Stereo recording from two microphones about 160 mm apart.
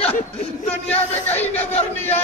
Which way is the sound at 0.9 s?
10° left (ahead or behind).